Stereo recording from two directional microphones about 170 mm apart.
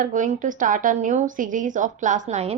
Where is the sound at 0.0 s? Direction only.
50° right (ahead or behind).